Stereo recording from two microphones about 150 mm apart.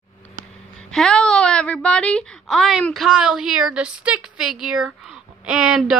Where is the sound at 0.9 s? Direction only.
5° left (ahead or behind).